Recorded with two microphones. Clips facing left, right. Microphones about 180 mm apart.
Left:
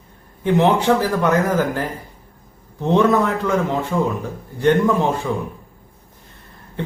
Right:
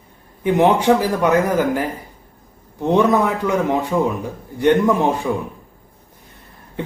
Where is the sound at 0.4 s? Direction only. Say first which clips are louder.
Right 1 dB; 15° right (ahead or behind).